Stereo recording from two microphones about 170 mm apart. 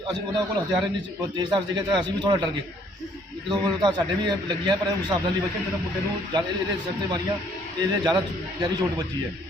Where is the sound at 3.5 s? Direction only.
25° right (ahead or behind).